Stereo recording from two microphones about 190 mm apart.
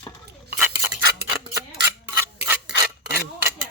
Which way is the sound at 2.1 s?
10° right (ahead or behind).